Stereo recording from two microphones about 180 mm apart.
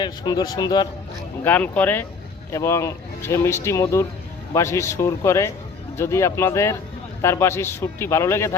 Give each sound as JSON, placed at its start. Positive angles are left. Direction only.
{"t": 0.0, "sound": "a man's voice", "side_deg": 25}
{"t": 1.5, "sound": "speech", "side_deg": 10}